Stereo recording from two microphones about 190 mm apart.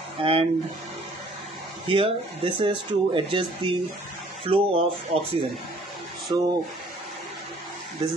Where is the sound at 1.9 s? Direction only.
25° right (ahead or behind).